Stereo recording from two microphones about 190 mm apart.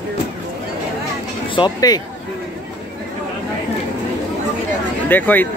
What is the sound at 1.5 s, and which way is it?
Speech, 20° left (ahead or behind).